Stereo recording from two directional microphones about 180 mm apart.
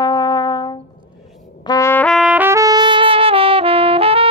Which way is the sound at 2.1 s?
5° right (ahead or behind).